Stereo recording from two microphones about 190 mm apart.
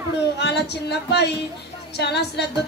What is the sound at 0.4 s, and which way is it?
Music, 60° left (ahead or behind).